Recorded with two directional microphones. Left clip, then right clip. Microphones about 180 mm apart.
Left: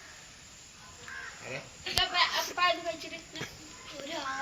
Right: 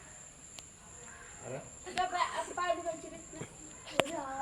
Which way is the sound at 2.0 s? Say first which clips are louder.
Left 5 dB; 30° right (ahead or behind).